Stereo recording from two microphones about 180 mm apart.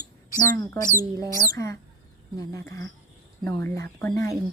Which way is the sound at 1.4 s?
15° left (ahead or behind).